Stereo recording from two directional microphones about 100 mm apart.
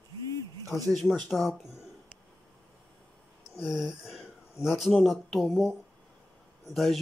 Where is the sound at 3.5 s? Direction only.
5° right (ahead or behind).